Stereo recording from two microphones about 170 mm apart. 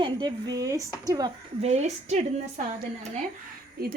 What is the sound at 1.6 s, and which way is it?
Speech, 40° right (ahead or behind).